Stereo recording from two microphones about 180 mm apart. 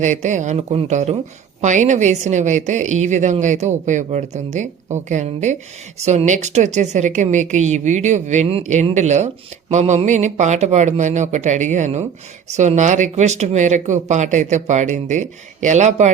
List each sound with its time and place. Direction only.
0.0 s a woman's voice: 40° right (ahead or behind)